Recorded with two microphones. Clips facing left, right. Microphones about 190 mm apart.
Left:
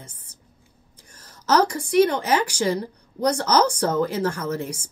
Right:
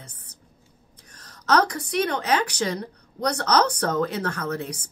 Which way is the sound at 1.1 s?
10° left (ahead or behind).